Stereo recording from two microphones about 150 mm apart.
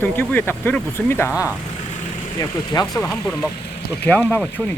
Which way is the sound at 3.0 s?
5° left (ahead or behind).